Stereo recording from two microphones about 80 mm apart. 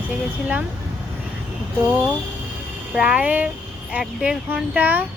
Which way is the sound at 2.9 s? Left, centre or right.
Centre.